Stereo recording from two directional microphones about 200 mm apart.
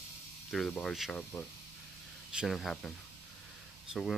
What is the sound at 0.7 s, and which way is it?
Speech, centre (ahead or behind).